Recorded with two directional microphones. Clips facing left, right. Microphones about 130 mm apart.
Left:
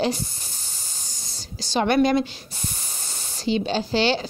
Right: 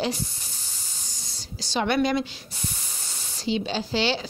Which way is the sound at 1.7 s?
45° left (ahead or behind).